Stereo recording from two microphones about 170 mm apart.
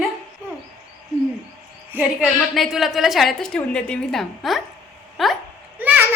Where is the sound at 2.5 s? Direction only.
Centre (ahead or behind).